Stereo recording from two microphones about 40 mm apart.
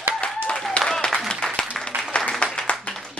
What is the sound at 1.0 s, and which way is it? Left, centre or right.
Applause, left.